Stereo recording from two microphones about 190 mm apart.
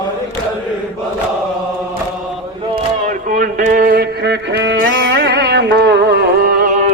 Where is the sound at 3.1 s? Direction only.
40° right (ahead or behind).